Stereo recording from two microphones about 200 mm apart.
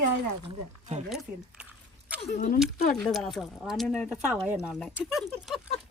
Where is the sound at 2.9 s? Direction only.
Centre (ahead or behind).